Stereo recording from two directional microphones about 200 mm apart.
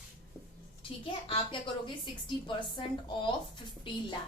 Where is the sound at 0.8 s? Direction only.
25° left (ahead or behind).